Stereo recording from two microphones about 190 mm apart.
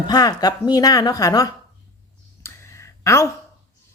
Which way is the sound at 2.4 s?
15° left (ahead or behind).